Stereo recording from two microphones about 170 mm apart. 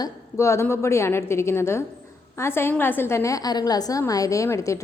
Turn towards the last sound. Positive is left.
turn(degrees=20)  # may be behind; listen again after turning